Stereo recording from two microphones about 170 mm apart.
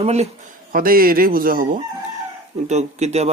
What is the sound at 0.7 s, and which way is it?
Speech, 60° right (ahead or behind).